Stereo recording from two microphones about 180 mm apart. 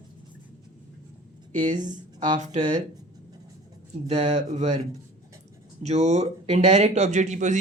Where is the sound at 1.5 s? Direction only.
45° right (ahead or behind).